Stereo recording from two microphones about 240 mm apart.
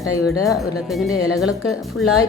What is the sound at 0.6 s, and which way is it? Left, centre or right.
Speech, centre.